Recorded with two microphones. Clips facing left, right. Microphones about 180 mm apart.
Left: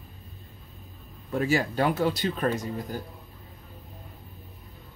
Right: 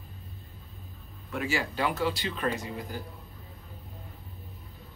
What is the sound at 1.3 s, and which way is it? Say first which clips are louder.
Speech: left 6 dB; 40° left (ahead or behind).